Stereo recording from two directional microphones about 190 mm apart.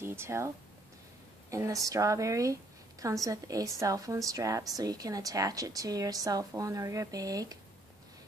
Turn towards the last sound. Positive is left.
turn(degrees=-20)  # may be behind; listen again after turning